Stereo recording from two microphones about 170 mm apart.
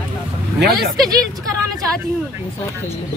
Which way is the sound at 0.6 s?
65° right (ahead or behind).